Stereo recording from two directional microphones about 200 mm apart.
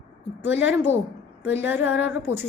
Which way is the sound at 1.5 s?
10° right (ahead or behind).